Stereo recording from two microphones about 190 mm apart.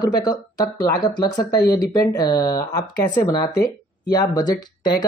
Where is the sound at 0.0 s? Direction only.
20° left (ahead or behind).